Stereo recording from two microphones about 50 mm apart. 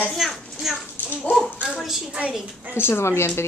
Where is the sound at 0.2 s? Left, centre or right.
Centre.